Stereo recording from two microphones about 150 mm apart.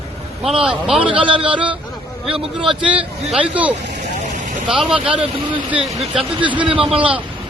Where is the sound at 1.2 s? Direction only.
35° right (ahead or behind).